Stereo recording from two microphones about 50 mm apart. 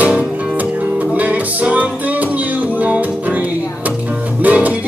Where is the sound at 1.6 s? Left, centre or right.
Right.